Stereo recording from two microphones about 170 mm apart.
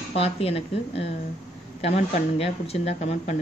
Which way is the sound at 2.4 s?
35° left (ahead or behind).